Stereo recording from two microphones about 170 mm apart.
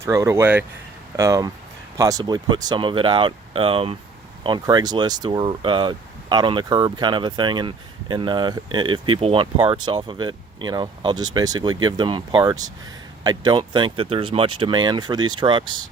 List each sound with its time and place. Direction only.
0.0 s speech: 20° right (ahead or behind)